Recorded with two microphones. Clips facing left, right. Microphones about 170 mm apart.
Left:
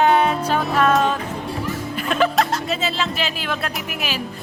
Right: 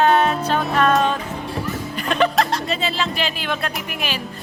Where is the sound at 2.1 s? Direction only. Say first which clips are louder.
Even; 5° left (ahead or behind).